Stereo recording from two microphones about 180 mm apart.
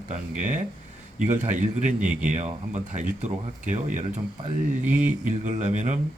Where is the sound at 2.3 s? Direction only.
40° right (ahead or behind).